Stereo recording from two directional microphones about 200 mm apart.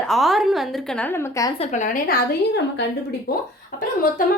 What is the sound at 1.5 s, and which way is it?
Speech, 35° left (ahead or behind).